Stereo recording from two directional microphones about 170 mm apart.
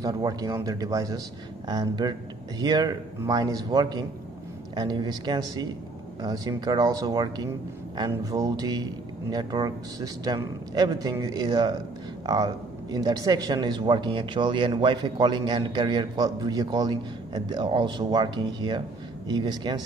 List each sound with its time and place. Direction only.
0.0 s speech: 20° right (ahead or behind)